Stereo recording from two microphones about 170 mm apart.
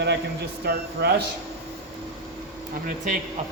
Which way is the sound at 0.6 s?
70° right (ahead or behind).